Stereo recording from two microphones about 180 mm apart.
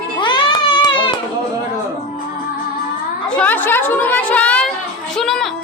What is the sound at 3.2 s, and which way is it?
Chatter, 5° left (ahead or behind).